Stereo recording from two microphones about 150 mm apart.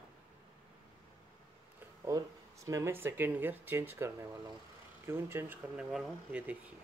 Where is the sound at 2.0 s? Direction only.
20° right (ahead or behind).